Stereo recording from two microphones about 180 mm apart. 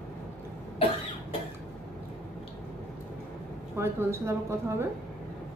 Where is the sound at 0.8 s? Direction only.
30° left (ahead or behind).